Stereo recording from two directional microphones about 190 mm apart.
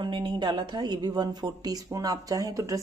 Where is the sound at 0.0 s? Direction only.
25° right (ahead or behind).